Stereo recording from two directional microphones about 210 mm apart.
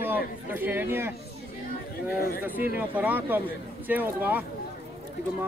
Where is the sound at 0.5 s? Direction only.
10° right (ahead or behind).